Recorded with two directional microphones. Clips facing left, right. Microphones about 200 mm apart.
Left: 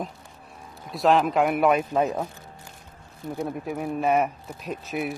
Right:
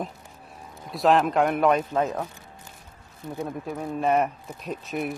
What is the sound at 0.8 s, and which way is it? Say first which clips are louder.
Speech: even; centre (ahead or behind).